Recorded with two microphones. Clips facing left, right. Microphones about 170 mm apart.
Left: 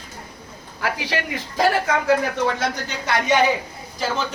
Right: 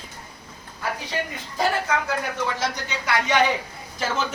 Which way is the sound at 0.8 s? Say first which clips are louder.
Left 3 dB; 80° left.